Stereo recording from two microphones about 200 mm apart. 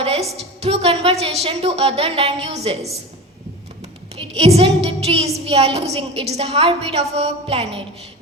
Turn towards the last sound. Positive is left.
turn(degrees=-30)  # may be behind; listen again after turning